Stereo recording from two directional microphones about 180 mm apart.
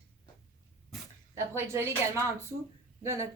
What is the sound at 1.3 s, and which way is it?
A woman's voice, 15° right (ahead or behind).